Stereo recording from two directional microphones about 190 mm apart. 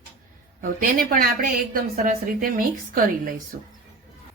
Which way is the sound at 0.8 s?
50° right (ahead or behind).